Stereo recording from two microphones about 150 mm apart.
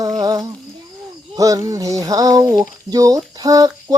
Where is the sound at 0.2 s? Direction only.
25° right (ahead or behind).